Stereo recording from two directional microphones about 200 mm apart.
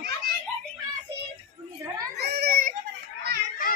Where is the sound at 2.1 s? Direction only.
55° right (ahead or behind).